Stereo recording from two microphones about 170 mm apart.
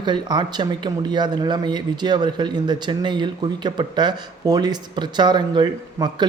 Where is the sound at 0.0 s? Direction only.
25° right (ahead or behind).